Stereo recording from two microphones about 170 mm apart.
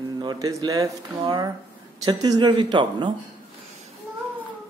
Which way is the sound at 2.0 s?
20° right (ahead or behind).